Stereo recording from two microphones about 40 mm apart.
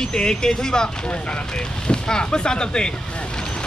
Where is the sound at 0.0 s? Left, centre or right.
Centre.